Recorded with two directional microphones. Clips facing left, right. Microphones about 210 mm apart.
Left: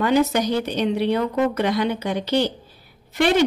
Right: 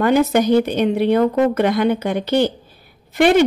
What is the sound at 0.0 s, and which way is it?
A woman's voice, 50° right (ahead or behind).